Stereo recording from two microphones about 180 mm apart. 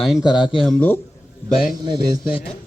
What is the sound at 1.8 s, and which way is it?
Speech, 25° right (ahead or behind).